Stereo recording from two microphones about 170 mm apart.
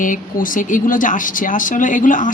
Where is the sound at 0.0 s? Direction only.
50° left (ahead or behind).